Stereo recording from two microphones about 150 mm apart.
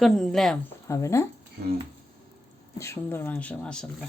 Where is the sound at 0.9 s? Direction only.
20° left (ahead or behind).